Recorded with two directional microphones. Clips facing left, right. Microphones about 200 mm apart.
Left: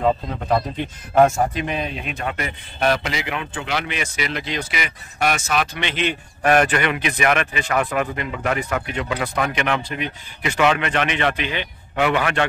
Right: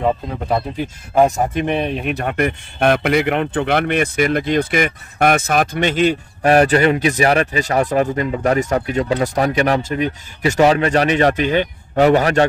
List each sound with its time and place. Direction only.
0.0 s speech: 10° right (ahead or behind)
1.5 s a man's voice: 55° right (ahead or behind); by 12.4 s 40° right (ahead or behind)